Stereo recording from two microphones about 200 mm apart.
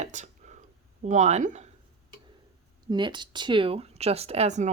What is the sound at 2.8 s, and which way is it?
Speech, 25° right (ahead or behind).